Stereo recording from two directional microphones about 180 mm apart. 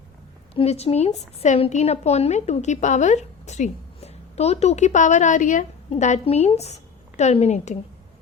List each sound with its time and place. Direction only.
0.5 s a woman's voice: 35° left (ahead or behind)